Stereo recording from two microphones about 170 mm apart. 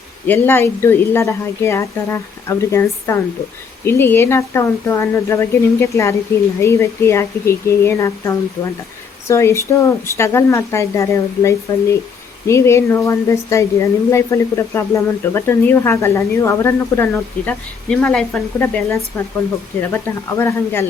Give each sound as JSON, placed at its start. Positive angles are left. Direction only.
{"t": 0.3, "sound": "a woman's voice", "side_deg": 15}